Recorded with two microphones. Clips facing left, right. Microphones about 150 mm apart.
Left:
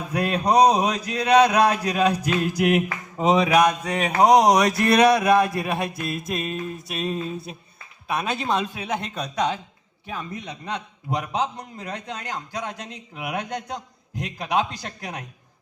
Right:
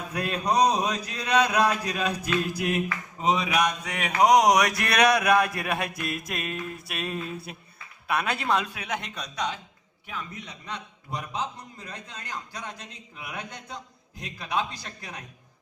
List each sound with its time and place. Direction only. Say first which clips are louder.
0.1 s mantra: left 6 dB; 35° left (ahead or behind)
4.2 s a sound: left 3 dB; 30° left (ahead or behind)
10.2 s a man's voice: left 4 dB; 70° left (ahead or behind)